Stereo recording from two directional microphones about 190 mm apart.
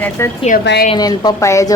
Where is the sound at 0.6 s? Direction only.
65° left (ahead or behind).